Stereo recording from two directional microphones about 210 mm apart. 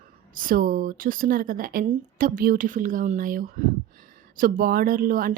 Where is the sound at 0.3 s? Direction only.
40° right (ahead or behind).